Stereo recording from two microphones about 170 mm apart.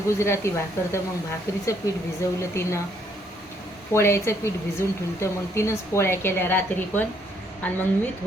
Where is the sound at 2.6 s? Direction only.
15° left (ahead or behind).